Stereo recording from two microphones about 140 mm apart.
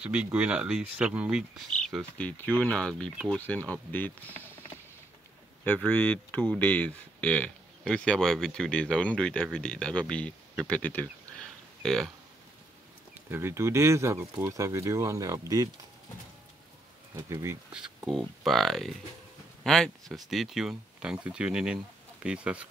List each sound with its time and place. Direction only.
0.0 s speech: 10° right (ahead or behind)
13.3 s speech: 15° right (ahead or behind)
17.1 s speech: 20° right (ahead or behind)
17.7 s speech: 5° right (ahead or behind)